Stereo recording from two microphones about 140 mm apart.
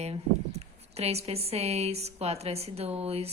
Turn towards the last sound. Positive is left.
turn(degrees=-45)  # may be behind; listen again after turning